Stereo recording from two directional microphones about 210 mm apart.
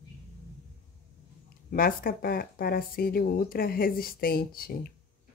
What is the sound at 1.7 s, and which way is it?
Speech, 45° left (ahead or behind).